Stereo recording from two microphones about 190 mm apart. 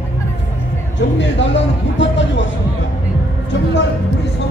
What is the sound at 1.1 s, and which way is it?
Speech, 70° left (ahead or behind).